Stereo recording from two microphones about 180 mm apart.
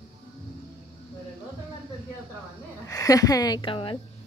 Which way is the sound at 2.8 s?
20° left (ahead or behind).